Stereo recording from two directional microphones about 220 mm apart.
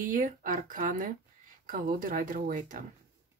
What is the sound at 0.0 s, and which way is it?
Speech, 35° right (ahead or behind).